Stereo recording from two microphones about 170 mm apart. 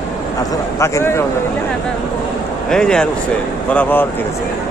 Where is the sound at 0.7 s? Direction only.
15° left (ahead or behind).